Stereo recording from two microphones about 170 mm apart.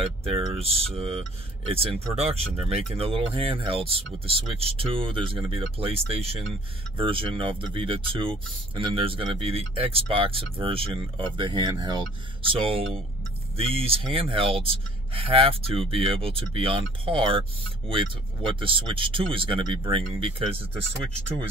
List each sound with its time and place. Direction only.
0.0 s speech: 35° right (ahead or behind)